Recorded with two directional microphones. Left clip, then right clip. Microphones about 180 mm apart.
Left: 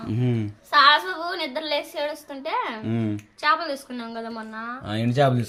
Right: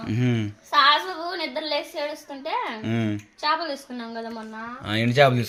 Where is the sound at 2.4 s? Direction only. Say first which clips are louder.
Left 1 dB; centre (ahead or behind).